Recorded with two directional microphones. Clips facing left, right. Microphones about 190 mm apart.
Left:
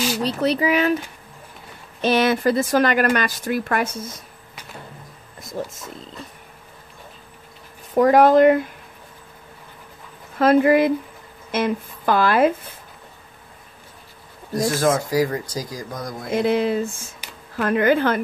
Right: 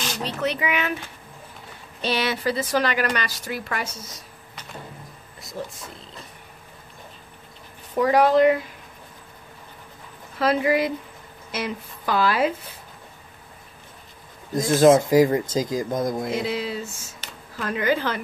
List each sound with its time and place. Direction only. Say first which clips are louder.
0.2 s speech: left 4 dB; 35° left (ahead or behind)
2.0 s speech: left 7 dB; 50° left (ahead or behind)
5.4 s speech: left 4 dB; 50° left (ahead or behind)
7.9 s speech: left 4 dB; 50° left (ahead or behind)
10.4 s speech: left 6 dB; 50° left (ahead or behind)
14.8 s speech: right 7 dB; 20° right (ahead or behind)
16.3 s a woman's voice: left 7 dB; 50° left (ahead or behind)